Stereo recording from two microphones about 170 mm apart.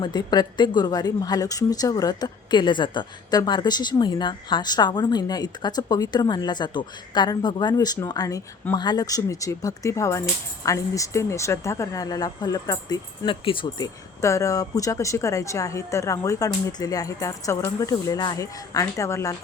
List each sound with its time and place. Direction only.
0.0 s speech: 25° left (ahead or behind)